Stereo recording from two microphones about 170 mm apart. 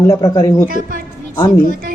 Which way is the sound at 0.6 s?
55° right (ahead or behind).